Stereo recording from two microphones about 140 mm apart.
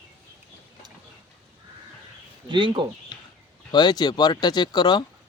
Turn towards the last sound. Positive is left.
turn(degrees=30)  # may be behind; listen again after turning